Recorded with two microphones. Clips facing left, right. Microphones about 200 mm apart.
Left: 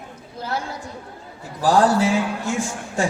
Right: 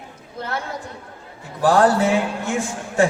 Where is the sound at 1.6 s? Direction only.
60° right (ahead or behind).